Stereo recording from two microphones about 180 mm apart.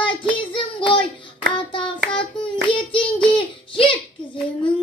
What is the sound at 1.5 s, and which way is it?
Hands, 30° left (ahead or behind).